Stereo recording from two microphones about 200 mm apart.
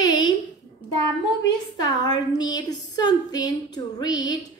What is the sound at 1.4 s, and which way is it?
A woman's voice, 20° left (ahead or behind).